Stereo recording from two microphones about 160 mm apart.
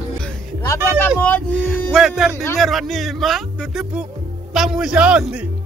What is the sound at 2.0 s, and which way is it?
Speech, 5° right (ahead or behind).